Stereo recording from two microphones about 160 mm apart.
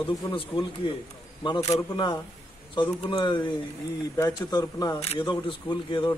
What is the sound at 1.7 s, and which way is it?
Speech, 30° left (ahead or behind).